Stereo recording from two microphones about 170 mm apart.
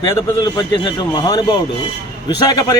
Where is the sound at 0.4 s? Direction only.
25° left (ahead or behind).